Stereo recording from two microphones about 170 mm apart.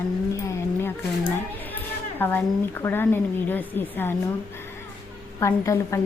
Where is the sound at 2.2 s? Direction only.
10° left (ahead or behind).